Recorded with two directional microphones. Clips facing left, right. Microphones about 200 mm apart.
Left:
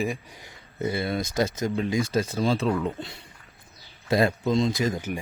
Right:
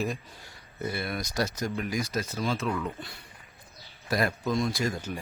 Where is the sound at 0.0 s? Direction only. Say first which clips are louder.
Left 3 dB; 15° left (ahead or behind).